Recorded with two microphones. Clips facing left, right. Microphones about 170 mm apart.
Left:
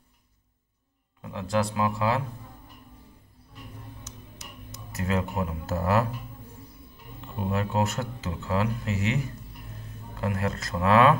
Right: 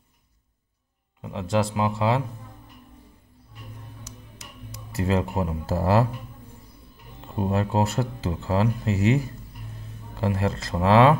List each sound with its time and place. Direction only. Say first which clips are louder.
1.2 s speech: right 2 dB; 25° right (ahead or behind)
4.6 s speech: right 5 dB; 30° right (ahead or behind)
7.3 s speech: right 3 dB; 30° right (ahead or behind)